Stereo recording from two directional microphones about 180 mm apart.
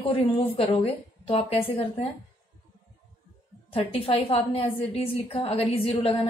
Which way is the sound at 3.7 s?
30° left (ahead or behind).